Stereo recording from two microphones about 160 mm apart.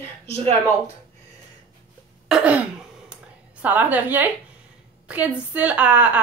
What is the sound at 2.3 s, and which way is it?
A woman's voice, 10° right (ahead or behind).